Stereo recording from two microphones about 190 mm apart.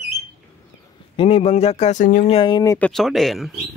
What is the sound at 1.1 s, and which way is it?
Speech, 30° left (ahead or behind).